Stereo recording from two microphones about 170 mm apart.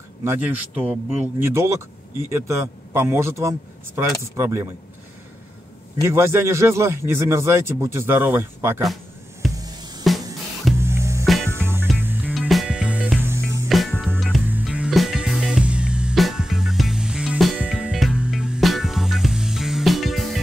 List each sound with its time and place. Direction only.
0.2 s speech: 10° right (ahead or behind)
6.0 s speech: 15° right (ahead or behind)
9.6 s music: 25° right (ahead or behind); by 20.3 s centre (ahead or behind)